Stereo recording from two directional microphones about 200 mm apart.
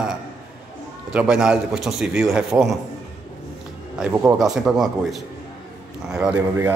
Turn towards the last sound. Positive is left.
turn(degrees=-10)  # may be behind; listen again after turning